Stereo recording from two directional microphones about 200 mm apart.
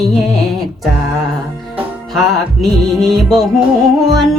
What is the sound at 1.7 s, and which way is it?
Music, centre (ahead or behind).